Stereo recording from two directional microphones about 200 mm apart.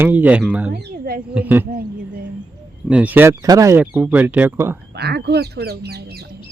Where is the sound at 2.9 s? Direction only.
5° right (ahead or behind).